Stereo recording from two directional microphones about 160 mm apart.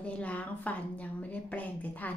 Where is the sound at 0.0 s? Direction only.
10° left (ahead or behind).